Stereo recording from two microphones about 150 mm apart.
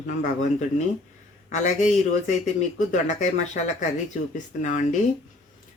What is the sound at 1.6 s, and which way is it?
Speech, 55° left (ahead or behind).